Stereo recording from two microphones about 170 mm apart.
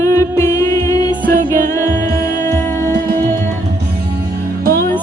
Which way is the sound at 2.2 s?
20° left (ahead or behind).